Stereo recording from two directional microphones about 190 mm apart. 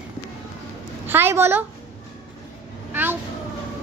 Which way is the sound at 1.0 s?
10° right (ahead or behind).